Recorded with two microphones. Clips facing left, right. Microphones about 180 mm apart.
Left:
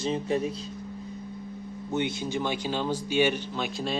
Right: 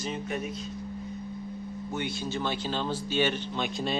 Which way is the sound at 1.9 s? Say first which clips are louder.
Left 5 dB; 20° left (ahead or behind).